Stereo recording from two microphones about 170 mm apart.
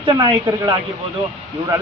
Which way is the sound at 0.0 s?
25° right (ahead or behind).